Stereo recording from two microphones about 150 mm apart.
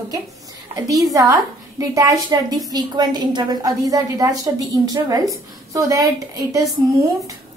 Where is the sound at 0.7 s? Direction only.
25° right (ahead or behind).